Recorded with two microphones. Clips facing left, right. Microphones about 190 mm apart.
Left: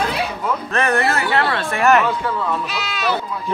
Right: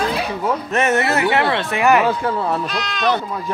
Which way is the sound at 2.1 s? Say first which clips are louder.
Right 2 dB; 40° right (ahead or behind).